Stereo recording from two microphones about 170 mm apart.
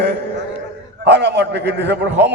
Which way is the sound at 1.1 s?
90° right.